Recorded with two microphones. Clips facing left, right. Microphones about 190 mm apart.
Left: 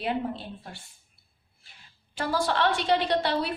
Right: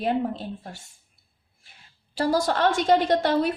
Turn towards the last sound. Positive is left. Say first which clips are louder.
# right 5 dB
turn(degrees=-50)  # may be behind; listen again after turning